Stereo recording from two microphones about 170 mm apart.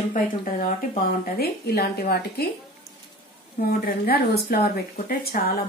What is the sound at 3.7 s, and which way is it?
Speech, 65° left (ahead or behind).